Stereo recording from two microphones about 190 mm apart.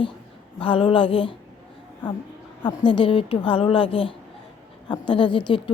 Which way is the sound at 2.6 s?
25° left (ahead or behind).